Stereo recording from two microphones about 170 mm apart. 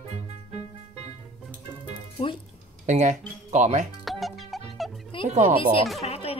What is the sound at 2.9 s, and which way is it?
Speech, 45° right (ahead or behind).